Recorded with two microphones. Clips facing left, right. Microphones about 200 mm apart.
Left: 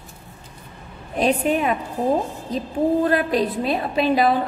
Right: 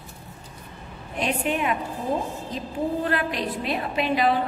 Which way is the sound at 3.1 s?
35° left (ahead or behind).